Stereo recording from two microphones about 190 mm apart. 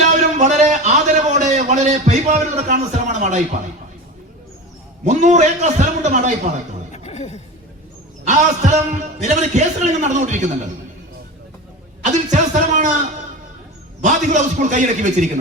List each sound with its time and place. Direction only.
0.1 s a sound: 40° right (ahead or behind)
5.0 s a man's voice: 40° right (ahead or behind)
6.9 s a sound: 35° left (ahead or behind)
8.2 s a man's voice: 35° right (ahead or behind)
12.3 s a man's voice: 40° right (ahead or behind)
14.0 s a man's voice: 40° right (ahead or behind)